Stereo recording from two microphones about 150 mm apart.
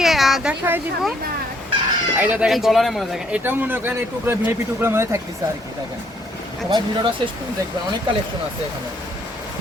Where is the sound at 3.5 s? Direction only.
15° right (ahead or behind).